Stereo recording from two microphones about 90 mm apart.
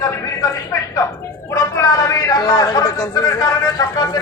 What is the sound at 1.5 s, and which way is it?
A man's voice, 40° left (ahead or behind).